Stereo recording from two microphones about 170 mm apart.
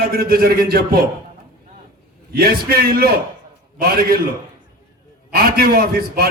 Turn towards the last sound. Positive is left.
turn(degrees=-60)  # may be behind; listen again after turning